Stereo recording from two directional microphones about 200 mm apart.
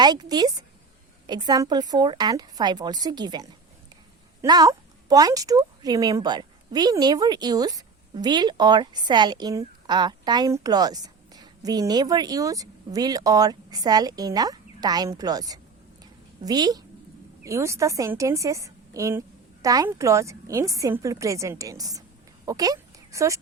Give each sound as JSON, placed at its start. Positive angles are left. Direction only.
{"t": 0.0, "sound": "a woman's voice", "side_deg": -20}